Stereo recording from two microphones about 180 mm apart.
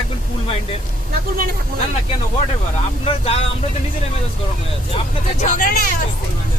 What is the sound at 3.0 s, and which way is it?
Speech, 35° left (ahead or behind).